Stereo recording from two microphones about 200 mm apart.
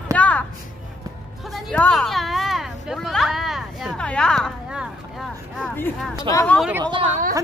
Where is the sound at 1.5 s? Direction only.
5° left (ahead or behind).